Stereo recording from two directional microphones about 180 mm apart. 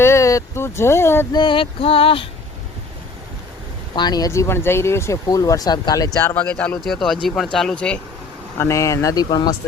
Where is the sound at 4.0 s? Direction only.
20° left (ahead or behind); by 8.0 s 5° left (ahead or behind).